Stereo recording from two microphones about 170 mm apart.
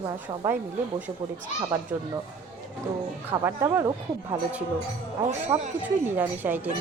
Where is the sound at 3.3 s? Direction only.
15° right (ahead or behind).